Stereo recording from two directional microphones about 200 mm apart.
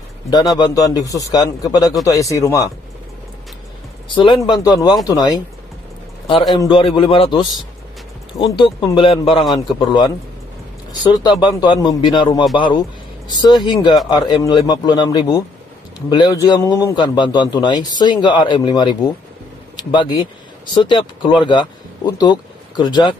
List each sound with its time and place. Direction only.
0.6 s a man's voice: 20° left (ahead or behind)
4.1 s a man's voice: 25° left (ahead or behind)
6.6 s a man's voice: 25° left (ahead or behind)